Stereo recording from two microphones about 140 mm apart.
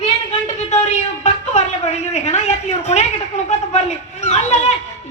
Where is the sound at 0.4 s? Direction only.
55° left (ahead or behind).